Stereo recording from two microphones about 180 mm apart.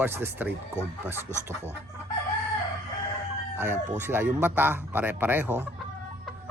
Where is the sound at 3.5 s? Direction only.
10° right (ahead or behind).